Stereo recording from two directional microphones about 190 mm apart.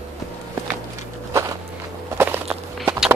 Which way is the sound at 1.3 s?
15° right (ahead or behind).